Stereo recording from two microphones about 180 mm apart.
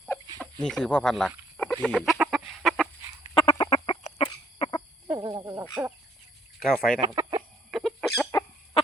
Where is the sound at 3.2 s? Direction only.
30° left (ahead or behind).